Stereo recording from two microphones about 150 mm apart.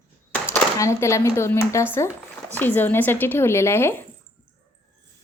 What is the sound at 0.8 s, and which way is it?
Speech, 20° left (ahead or behind).